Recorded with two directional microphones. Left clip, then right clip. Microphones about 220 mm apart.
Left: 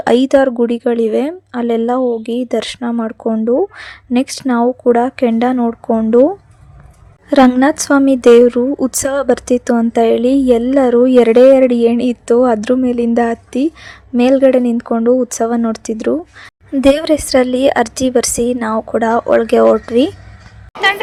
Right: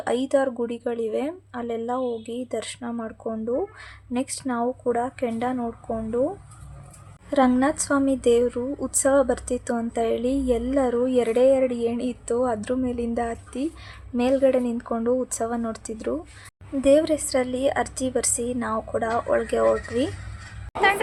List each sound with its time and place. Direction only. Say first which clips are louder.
0.0 s a woman's voice: left 12 dB; 40° left (ahead or behind)
7.3 s a woman's voice: left 11 dB; 40° left (ahead or behind)